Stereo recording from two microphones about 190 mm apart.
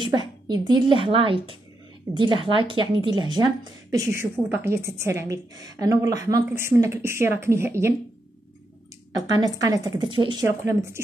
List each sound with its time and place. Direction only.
0.0 s speech: 25° right (ahead or behind)
9.3 s speech: 20° right (ahead or behind)
10.6 s speech: 15° right (ahead or behind)